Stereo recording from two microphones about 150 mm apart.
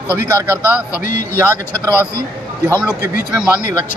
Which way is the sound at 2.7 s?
15° left (ahead or behind).